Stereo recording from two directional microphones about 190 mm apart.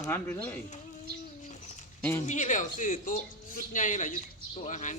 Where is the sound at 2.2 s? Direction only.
40° left (ahead or behind).